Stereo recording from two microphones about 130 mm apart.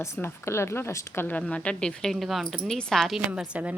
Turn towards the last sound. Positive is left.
turn(degrees=-10)  # may be behind; listen again after turning